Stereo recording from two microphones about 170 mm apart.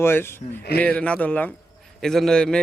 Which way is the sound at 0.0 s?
15° left (ahead or behind).